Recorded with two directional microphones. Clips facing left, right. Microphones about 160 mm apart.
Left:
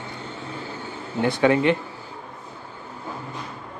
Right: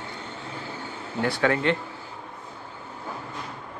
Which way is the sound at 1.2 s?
20° left (ahead or behind).